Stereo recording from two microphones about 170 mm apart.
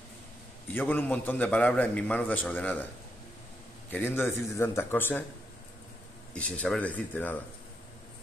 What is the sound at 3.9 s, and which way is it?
A man's voice, 15° left (ahead or behind).